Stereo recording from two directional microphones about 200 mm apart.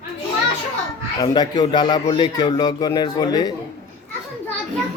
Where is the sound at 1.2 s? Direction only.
20° left (ahead or behind).